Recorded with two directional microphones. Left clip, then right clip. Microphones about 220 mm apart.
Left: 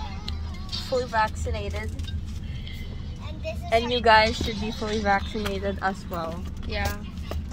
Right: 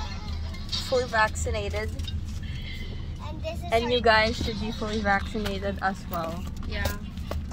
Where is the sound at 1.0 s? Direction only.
5° right (ahead or behind).